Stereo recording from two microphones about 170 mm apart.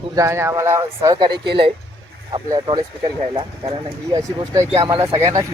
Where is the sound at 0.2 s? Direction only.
15° right (ahead or behind).